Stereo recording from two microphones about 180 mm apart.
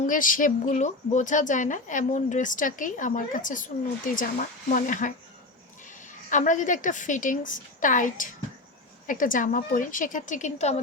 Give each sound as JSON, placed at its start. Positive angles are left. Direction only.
{"t": 0.0, "sound": "speech", "side_deg": 45}
{"t": 6.3, "sound": "speech", "side_deg": 45}